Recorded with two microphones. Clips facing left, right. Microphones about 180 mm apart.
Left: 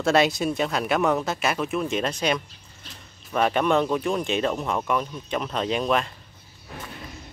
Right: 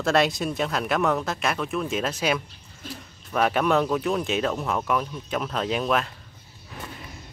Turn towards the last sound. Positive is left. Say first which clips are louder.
# left 1 dB
turn(degrees=0)  # may be behind; listen again after turning